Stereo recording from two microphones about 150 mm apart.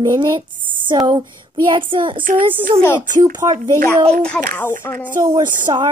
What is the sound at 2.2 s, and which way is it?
Speech, 65° right (ahead or behind).